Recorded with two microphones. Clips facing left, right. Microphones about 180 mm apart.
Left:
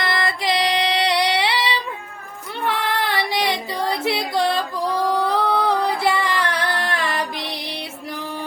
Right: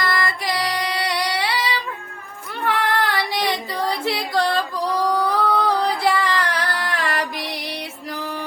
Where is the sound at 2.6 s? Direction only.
20° left (ahead or behind).